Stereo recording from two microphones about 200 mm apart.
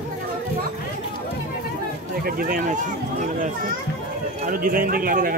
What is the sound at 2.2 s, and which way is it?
Speech, 45° right (ahead or behind).